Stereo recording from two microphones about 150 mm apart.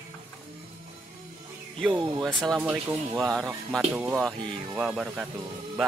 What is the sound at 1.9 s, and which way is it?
Speech, 30° right (ahead or behind).